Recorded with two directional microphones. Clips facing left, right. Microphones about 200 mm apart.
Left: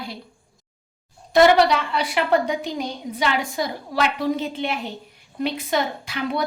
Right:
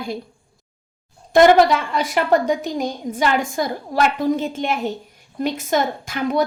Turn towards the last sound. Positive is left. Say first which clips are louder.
# right 5 dB
turn(degrees=-45)  # may be behind; listen again after turning